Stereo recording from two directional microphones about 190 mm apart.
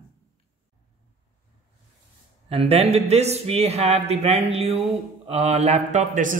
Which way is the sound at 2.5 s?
30° right (ahead or behind).